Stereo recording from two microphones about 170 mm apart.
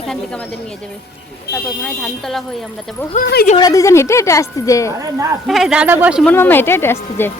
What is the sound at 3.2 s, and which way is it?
Speech, 70° left (ahead or behind).